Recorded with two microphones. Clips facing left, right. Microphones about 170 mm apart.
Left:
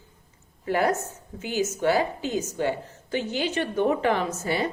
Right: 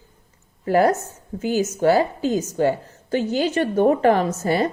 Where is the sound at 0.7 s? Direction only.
40° right (ahead or behind).